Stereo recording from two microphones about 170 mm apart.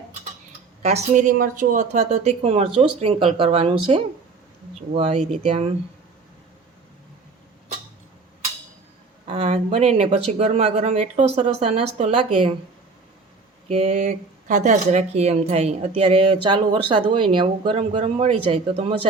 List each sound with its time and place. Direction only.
0.8 s a woman's voice: 40° right (ahead or behind)
9.2 s speech: 40° right (ahead or behind)
13.7 s speech: 40° right (ahead or behind)